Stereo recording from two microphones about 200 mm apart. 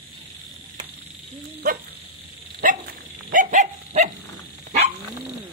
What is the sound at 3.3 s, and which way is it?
Dog, 40° right (ahead or behind).